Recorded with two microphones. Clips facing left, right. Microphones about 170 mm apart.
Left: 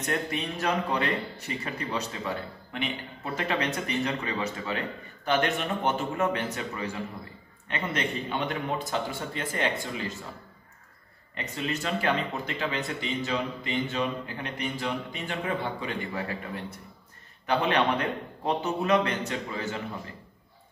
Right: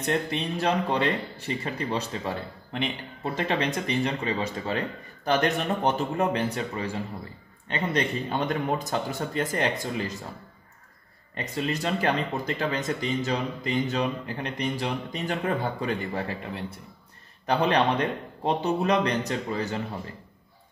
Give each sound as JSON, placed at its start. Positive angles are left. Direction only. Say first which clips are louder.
{"t": 0.0, "sound": "speech", "louder": "right 3 dB", "side_deg": -35}
{"t": 11.3, "sound": "speech", "louder": "right 3 dB", "side_deg": -35}
{"t": 17.5, "sound": "speech", "louder": "right 2 dB", "side_deg": -35}